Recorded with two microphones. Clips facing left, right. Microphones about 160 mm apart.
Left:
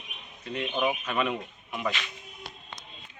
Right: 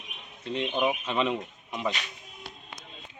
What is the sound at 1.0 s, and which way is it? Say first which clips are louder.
Speech: right 1 dB; 25° right (ahead or behind).